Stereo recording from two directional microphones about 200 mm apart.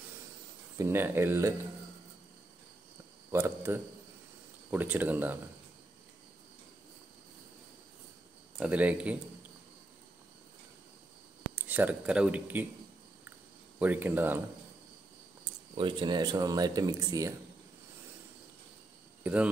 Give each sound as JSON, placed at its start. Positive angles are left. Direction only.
{"t": 0.7, "sound": "speech", "side_deg": -10}
{"t": 3.3, "sound": "speech", "side_deg": -15}
{"t": 8.5, "sound": "speech", "side_deg": -5}
{"t": 11.5, "sound": "speech", "side_deg": -10}
{"t": 13.7, "sound": "speech", "side_deg": -10}
{"t": 15.7, "sound": "speech", "side_deg": -25}